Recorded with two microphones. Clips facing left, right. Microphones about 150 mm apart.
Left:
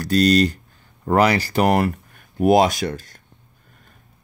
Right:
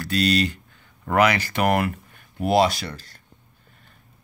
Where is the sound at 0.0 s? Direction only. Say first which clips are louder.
Left 6 dB; 40° left (ahead or behind).